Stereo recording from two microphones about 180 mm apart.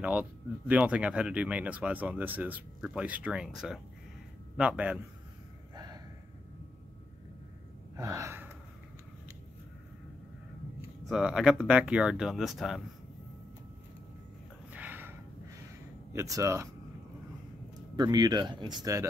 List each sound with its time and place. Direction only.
0.0 s speech: 10° right (ahead or behind)
7.9 s gasp: 20° right (ahead or behind)
11.1 s speech: centre (ahead or behind)
14.7 s gasp: 10° right (ahead or behind)
16.1 s speech: 15° right (ahead or behind)
17.9 s speech: 25° right (ahead or behind)